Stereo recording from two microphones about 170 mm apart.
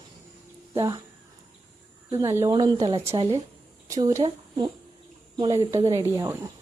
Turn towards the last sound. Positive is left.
turn(degrees=-20)  # may be behind; listen again after turning